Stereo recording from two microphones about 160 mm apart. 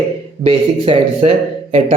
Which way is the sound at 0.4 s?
35° right (ahead or behind).